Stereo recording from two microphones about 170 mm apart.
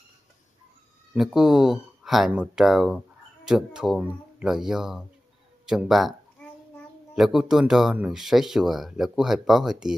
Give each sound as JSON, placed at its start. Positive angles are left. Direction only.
{"t": 1.1, "sound": "speech", "side_deg": 0}
{"t": 7.2, "sound": "speech", "side_deg": 0}